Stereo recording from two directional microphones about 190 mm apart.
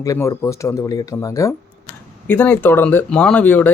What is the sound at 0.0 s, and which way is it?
Speech, 15° left (ahead or behind).